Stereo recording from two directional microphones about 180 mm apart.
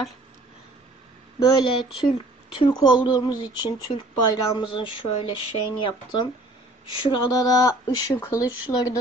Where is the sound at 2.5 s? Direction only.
30° left (ahead or behind).